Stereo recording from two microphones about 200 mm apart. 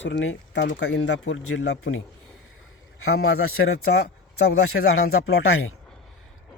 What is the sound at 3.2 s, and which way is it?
A man's voice, 90° left.